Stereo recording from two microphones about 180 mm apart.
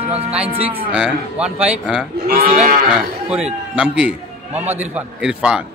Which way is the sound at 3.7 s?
5° right (ahead or behind).